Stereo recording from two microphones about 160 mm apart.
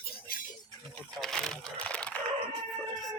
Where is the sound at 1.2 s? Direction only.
5° left (ahead or behind).